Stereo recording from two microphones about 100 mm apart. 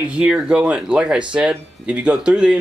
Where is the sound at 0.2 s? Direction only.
10° right (ahead or behind).